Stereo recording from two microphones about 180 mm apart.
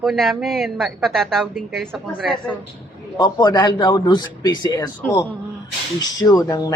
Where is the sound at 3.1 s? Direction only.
25° left (ahead or behind).